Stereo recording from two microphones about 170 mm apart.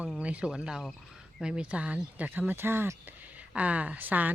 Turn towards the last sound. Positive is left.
turn(degrees=-10)  # may be behind; listen again after turning